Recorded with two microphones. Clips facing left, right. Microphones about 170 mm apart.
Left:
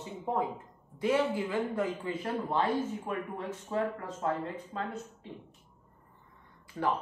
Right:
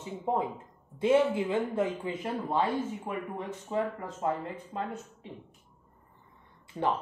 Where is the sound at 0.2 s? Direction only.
20° right (ahead or behind).